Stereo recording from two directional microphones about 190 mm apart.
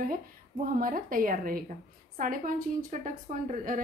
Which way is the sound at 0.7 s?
45° right (ahead or behind).